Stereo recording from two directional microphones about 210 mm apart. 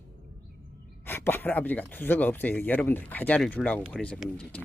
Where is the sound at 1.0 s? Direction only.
10° left (ahead or behind).